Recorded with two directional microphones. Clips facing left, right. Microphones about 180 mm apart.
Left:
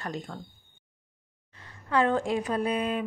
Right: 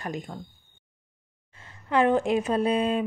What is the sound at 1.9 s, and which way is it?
A woman's voice, 20° right (ahead or behind).